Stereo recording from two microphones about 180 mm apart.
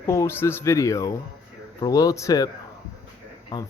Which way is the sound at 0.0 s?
15° left (ahead or behind).